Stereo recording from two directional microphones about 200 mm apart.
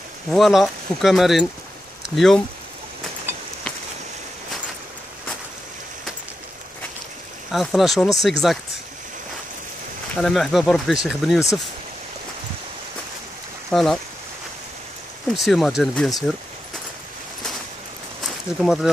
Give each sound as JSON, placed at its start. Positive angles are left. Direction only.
{"t": 0.3, "sound": "speech", "side_deg": 0}
{"t": 3.3, "sound": "a sound", "side_deg": -10}
{"t": 7.5, "sound": "speech", "side_deg": 0}
{"t": 10.1, "sound": "speech", "side_deg": 0}
{"t": 13.7, "sound": "speech", "side_deg": 0}
{"t": 15.2, "sound": "speech", "side_deg": 0}
{"t": 18.2, "sound": "a sound", "side_deg": 0}